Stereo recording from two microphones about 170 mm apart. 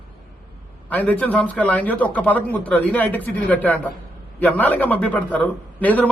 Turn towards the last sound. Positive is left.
turn(degrees=10)  # may be behind; listen again after turning